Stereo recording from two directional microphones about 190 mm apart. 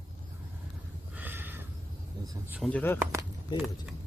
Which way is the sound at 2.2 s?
20° right (ahead or behind).